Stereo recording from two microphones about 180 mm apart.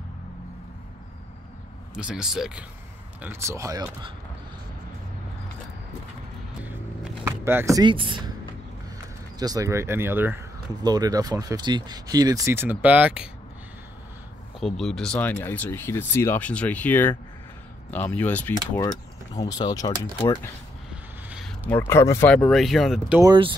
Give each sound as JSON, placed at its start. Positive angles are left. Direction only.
{"t": 2.0, "sound": "speech", "side_deg": -5}
{"t": 6.6, "sound": "vehicle", "side_deg": 0}
{"t": 7.2, "sound": "speech", "side_deg": -15}
{"t": 9.4, "sound": "speech", "side_deg": -20}
{"t": 14.6, "sound": "speech", "side_deg": 0}
{"t": 19.3, "sound": "speech", "side_deg": 20}
{"t": 20.9, "sound": "speech", "side_deg": -5}
{"t": 23.2, "sound": "speech", "side_deg": -25}